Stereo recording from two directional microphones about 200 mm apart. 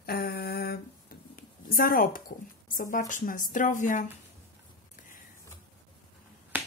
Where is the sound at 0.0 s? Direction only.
50° left (ahead or behind).